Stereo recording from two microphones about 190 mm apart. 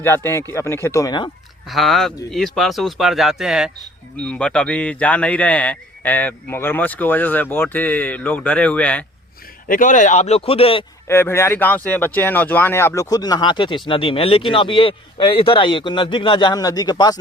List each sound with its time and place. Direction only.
0.0 s a man's voice: 10° left (ahead or behind)
1.6 s a man's voice: centre (ahead or behind)
9.6 s speech: 45° left (ahead or behind); by 10.8 s 30° left (ahead or behind)
11.1 s speech: 10° left (ahead or behind)